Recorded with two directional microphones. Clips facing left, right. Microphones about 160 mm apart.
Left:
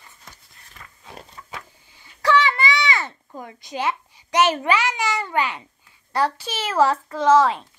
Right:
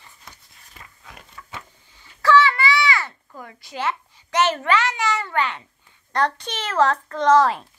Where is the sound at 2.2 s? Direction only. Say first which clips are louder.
Right 2 dB; 15° left (ahead or behind).